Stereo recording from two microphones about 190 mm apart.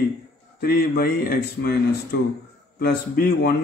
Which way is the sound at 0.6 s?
55° left (ahead or behind).